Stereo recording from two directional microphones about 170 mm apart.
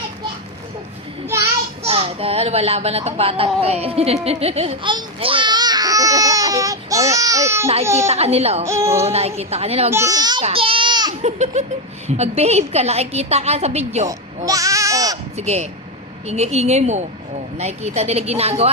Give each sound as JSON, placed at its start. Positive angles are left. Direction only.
{"t": 1.8, "sound": "a child's voice", "side_deg": -35}
{"t": 7.9, "sound": "a woman's voice", "side_deg": -40}
{"t": 8.6, "sound": "speech", "side_deg": -15}
{"t": 9.0, "sound": "a woman's voice", "side_deg": -40}
{"t": 9.9, "sound": "a child's voice", "side_deg": -20}
{"t": 10.4, "sound": "baby cry", "side_deg": -35}
{"t": 11.2, "sound": "a woman's voice", "side_deg": -40}
{"t": 14.1, "sound": "bleat", "side_deg": -20}
{"t": 15.4, "sound": "a woman's voice", "side_deg": -40}